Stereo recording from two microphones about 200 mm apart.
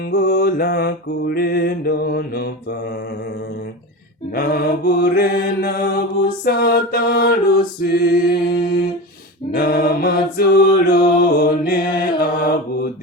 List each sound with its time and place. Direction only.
0.1 s mantra: 55° left (ahead or behind)
4.4 s mantra: 50° left (ahead or behind)
9.5 s mantra: 50° left (ahead or behind)